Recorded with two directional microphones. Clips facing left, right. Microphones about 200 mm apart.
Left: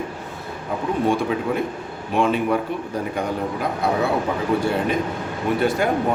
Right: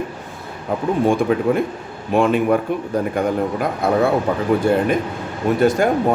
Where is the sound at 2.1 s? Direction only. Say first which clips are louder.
Right 4 dB; 50° right (ahead or behind).